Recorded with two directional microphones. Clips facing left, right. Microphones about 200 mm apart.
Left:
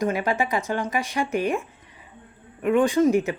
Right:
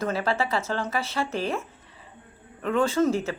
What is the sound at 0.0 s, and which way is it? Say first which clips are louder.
Speech: left 2 dB; 15° left (ahead or behind).